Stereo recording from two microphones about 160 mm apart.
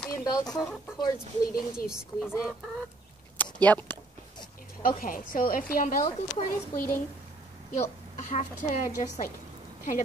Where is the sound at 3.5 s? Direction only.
10° left (ahead or behind).